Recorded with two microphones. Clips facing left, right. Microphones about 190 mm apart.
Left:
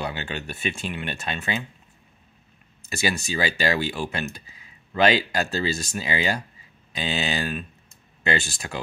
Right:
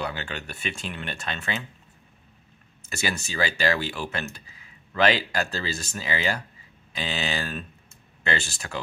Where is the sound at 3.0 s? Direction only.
15° left (ahead or behind).